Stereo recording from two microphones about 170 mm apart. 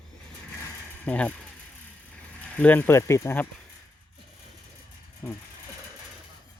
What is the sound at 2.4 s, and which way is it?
Speech, 10° left (ahead or behind).